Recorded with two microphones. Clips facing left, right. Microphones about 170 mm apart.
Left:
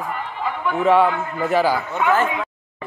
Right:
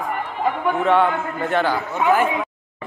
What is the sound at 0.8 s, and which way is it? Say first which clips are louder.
Speech: left 3 dB; 5° left (ahead or behind).